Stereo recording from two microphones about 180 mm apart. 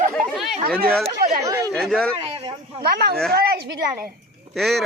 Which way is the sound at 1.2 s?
55° right (ahead or behind).